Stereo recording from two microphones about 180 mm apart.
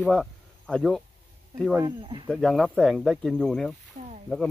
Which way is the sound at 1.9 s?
25° right (ahead or behind).